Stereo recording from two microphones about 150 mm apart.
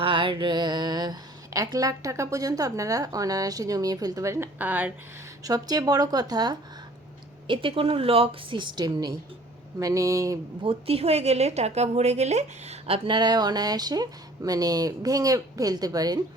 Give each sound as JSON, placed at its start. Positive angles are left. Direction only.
{"t": 0.0, "sound": "speech", "side_deg": -35}
{"t": 5.4, "sound": "a woman's voice", "side_deg": -25}
{"t": 10.6, "sound": "a woman's voice", "side_deg": -40}
{"t": 13.1, "sound": "speech", "side_deg": -30}